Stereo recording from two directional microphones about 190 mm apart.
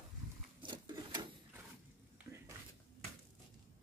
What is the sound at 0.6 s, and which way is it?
Sewing machine, 25° right (ahead or behind).